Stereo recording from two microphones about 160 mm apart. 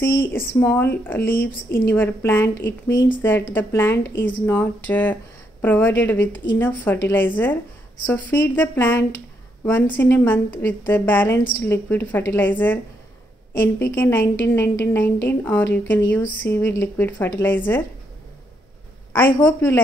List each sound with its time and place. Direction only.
0.3 s a woman's voice: 15° left (ahead or behind)
19.1 s a woman's voice: 15° left (ahead or behind)